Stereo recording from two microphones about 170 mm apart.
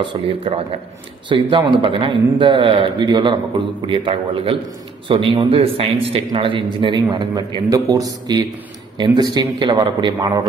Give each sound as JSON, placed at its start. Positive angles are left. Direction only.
{"t": 0.0, "sound": "a man's voice", "side_deg": -30}